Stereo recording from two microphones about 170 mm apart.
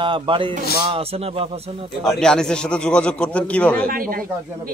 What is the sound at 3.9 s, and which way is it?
Speech, 55° right (ahead or behind).